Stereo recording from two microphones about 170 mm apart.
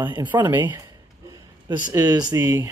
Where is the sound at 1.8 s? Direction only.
20° right (ahead or behind).